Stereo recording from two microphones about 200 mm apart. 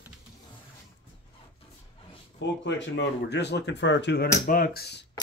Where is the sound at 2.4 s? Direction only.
60° left (ahead or behind).